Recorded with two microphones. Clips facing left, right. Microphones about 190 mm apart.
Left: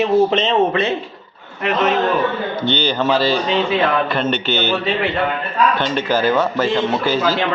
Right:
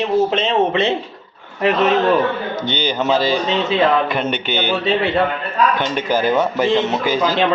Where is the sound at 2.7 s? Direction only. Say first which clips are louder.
Even; 15° right (ahead or behind).